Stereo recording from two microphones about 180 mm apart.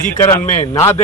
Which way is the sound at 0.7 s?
15° left (ahead or behind).